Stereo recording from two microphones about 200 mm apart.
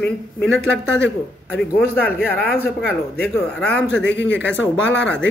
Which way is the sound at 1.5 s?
5° left (ahead or behind).